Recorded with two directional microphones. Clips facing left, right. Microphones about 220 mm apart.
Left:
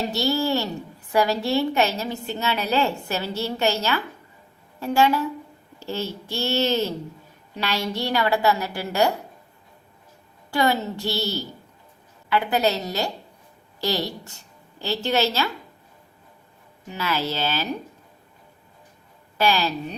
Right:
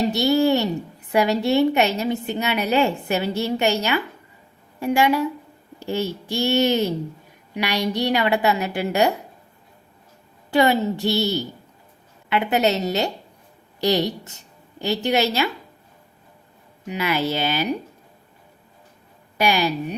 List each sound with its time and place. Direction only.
0.1 s a woman's voice: 20° right (ahead or behind)
10.5 s a woman's voice: 20° right (ahead or behind)
16.8 s a woman's voice: 15° right (ahead or behind)
19.4 s a woman's voice: 15° right (ahead or behind)